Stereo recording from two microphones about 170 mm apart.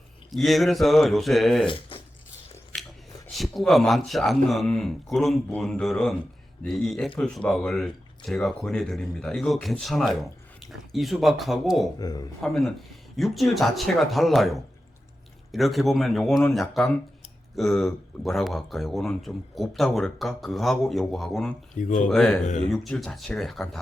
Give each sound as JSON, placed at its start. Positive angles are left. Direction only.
{"t": 0.3, "sound": "speech", "side_deg": 0}
{"t": 1.6, "sound": "speech", "side_deg": 30}
{"t": 3.3, "sound": "speech", "side_deg": 0}
{"t": 11.9, "sound": "speech", "side_deg": 25}
{"t": 12.4, "sound": "speech", "side_deg": 0}
{"t": 21.8, "sound": "speech", "side_deg": 50}
{"t": 22.1, "sound": "speech", "side_deg": 0}